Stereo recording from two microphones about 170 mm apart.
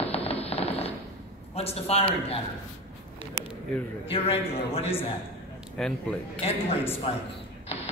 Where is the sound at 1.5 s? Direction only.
35° left (ahead or behind).